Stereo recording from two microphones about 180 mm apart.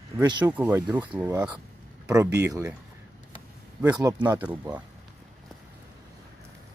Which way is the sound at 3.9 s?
20° right (ahead or behind).